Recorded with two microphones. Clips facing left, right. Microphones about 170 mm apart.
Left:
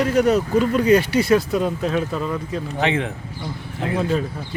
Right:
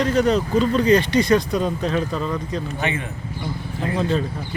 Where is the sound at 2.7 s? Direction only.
85° left.